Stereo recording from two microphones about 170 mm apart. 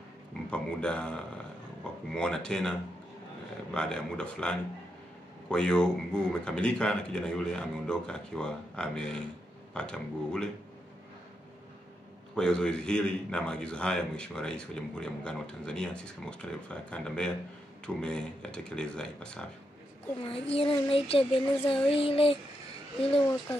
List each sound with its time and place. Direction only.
0.5 s a man's voice: 5° left (ahead or behind)
2.1 s a man's voice: 5° left (ahead or behind)
12.4 s a man's voice: 5° left (ahead or behind)
20.2 s a sound: 35° left (ahead or behind)